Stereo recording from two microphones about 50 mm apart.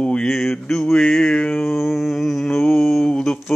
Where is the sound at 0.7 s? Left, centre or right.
Centre.